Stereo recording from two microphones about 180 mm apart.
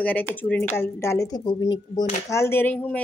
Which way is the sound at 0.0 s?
10° left (ahead or behind).